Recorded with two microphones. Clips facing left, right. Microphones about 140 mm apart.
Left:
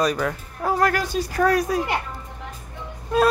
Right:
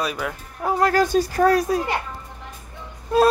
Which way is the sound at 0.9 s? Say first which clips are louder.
Right 6 dB; 35° right (ahead or behind).